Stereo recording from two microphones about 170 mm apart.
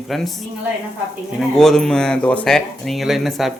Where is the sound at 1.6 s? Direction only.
5° left (ahead or behind).